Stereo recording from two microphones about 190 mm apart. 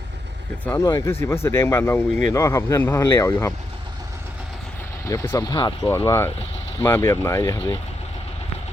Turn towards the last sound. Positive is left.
turn(degrees=15)  # may be behind; listen again after turning